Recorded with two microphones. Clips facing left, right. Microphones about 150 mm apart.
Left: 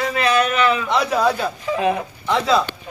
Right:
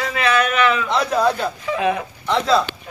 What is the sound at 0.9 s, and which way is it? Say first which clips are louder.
Speech: even; 5° left (ahead or behind).